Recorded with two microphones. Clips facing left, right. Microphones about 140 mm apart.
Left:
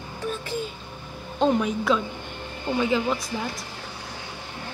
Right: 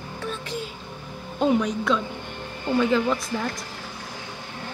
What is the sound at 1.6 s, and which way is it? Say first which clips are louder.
A woman's voice: left 1 dB; 5° left (ahead or behind).